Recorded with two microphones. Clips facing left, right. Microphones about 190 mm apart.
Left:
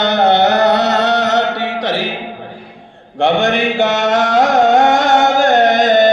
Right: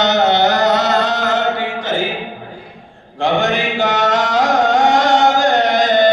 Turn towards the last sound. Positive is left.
turn(degrees=50)  # may be behind; listen again after turning